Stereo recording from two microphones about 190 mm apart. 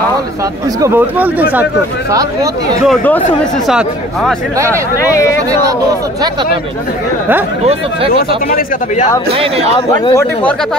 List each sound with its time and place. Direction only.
0.7 s speech: 15° right (ahead or behind)
2.8 s speech: 5° left (ahead or behind)
8.5 s speech: 45° left (ahead or behind)
9.3 s speech: 30° right (ahead or behind)
9.8 s speech: 20° left (ahead or behind)